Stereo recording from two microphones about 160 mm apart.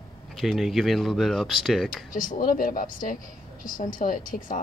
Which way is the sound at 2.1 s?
60° left (ahead or behind).